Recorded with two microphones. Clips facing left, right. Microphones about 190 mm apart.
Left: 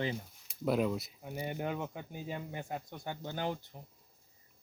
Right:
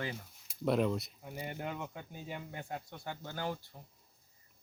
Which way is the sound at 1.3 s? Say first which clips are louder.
Left 5 dB; 20° left (ahead or behind).